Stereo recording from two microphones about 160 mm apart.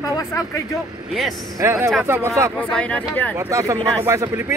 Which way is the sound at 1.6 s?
15° right (ahead or behind).